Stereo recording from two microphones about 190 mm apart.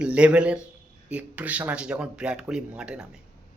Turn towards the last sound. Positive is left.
turn(degrees=-5)  # may be behind; listen again after turning